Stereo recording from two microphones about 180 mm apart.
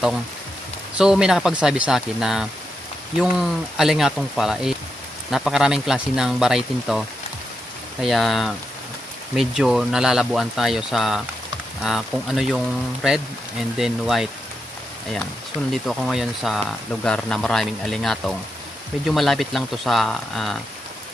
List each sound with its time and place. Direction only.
0.9 s speech: 5° right (ahead or behind)
15.7 s speech: centre (ahead or behind)